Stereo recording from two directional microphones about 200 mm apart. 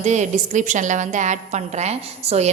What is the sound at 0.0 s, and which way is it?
A woman's voice, 35° right (ahead or behind).